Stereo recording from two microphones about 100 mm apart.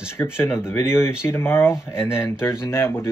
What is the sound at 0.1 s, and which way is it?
Speech, 25° left (ahead or behind).